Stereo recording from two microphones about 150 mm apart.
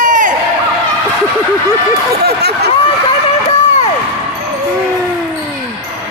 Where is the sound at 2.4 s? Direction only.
90° right.